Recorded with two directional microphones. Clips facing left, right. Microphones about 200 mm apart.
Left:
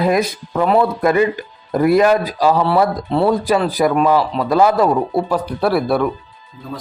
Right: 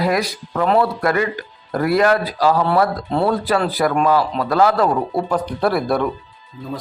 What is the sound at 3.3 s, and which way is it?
Speech, 15° left (ahead or behind).